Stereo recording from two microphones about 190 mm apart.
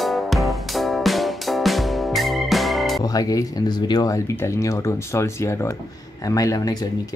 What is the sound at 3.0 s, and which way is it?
Speech, 20° left (ahead or behind).